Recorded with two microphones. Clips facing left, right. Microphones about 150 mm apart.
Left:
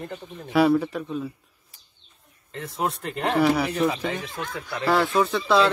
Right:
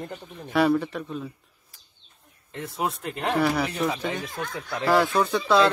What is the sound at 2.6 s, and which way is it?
Speech, centre (ahead or behind).